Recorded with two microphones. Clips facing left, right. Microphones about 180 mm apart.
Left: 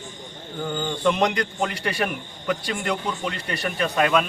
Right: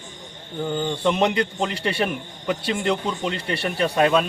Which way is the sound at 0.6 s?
20° right (ahead or behind).